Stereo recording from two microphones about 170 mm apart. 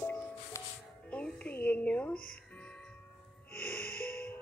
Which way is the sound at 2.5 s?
5° left (ahead or behind).